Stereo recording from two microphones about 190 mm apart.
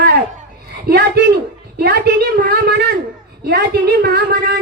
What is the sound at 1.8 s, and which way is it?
Speech, 55° right (ahead or behind).